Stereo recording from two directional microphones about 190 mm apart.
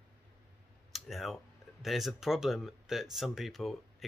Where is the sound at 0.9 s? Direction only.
Centre (ahead or behind).